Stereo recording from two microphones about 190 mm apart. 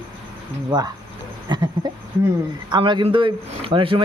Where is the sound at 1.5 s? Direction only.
25° right (ahead or behind).